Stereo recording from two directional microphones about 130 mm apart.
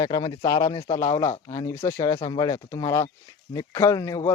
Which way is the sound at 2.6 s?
25° left (ahead or behind).